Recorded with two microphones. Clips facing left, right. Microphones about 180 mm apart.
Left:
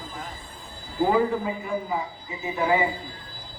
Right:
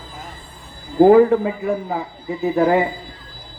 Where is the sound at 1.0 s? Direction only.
60° right (ahead or behind).